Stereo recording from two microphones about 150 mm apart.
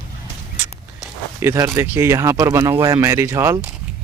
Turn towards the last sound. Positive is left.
turn(degrees=-20)  # may be behind; listen again after turning